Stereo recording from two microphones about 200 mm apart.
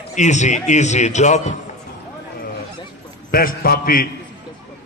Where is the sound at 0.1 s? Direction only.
35° left (ahead or behind).